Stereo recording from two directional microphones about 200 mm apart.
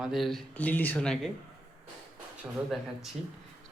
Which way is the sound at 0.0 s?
Centre (ahead or behind).